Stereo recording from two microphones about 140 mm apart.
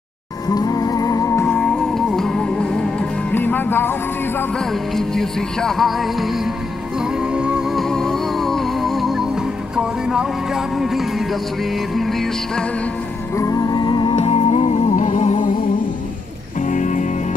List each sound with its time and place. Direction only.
0.6 s music: 25° left (ahead or behind)
1.5 s music: 5° left (ahead or behind)
4.9 s music: 5° left (ahead or behind)
13.4 s music: 25° left (ahead or behind)
14.1 s music: 45° left (ahead or behind)
16.6 s music: 65° left (ahead or behind)